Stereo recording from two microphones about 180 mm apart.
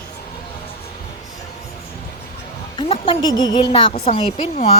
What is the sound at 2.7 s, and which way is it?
A woman's voice, 30° left (ahead or behind).